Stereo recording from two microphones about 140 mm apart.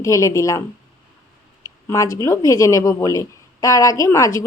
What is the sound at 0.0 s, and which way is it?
Speech, 25° left (ahead or behind).